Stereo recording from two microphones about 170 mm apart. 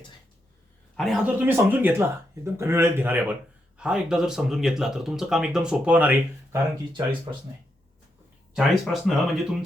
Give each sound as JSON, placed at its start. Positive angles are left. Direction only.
{"t": 0.9, "sound": "a man's voice", "side_deg": 0}
{"t": 1.4, "sound": "speech", "side_deg": -10}
{"t": 8.5, "sound": "speech", "side_deg": 0}